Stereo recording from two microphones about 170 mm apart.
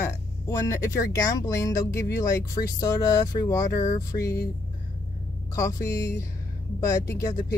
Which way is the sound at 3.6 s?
50° left (ahead or behind).